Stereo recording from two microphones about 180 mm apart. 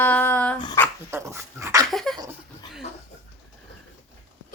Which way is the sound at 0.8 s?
15° left (ahead or behind).